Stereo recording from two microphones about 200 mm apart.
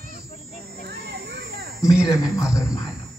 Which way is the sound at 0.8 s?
55° right (ahead or behind).